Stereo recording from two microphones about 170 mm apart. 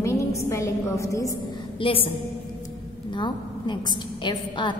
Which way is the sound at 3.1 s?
25° left (ahead or behind).